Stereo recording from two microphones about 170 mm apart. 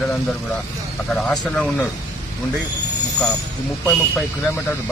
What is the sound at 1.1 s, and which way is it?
Speech, 5° left (ahead or behind).